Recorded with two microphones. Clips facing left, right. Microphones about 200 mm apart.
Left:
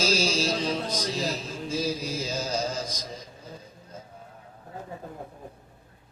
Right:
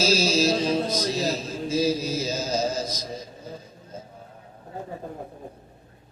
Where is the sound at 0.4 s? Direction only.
35° right (ahead or behind).